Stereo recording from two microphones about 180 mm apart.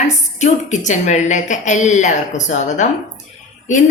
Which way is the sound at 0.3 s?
40° left (ahead or behind).